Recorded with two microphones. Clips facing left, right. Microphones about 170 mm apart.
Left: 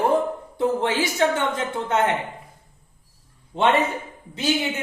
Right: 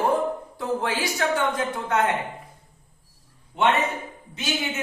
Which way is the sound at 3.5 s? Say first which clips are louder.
Left 2 dB; 30° left (ahead or behind).